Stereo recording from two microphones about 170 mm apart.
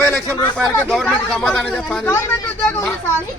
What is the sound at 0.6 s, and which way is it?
Speech, centre (ahead or behind).